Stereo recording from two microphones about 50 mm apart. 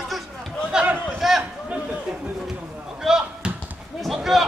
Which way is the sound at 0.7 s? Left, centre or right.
Centre.